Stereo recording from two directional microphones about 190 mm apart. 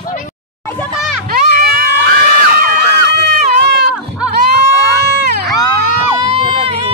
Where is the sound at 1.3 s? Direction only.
50° right (ahead or behind).